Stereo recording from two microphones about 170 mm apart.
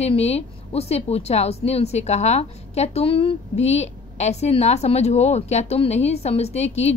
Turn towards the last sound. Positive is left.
turn(degrees=40)  # may be behind; listen again after turning